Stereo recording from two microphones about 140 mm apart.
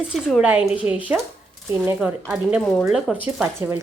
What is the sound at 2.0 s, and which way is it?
A woman's voice, 5° right (ahead or behind).